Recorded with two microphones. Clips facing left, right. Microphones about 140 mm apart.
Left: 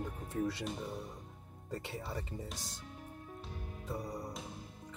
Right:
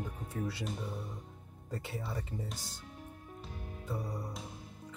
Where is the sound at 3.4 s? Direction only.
Centre (ahead or behind).